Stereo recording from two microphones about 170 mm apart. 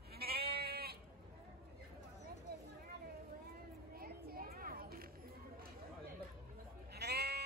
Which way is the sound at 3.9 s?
60° right (ahead or behind).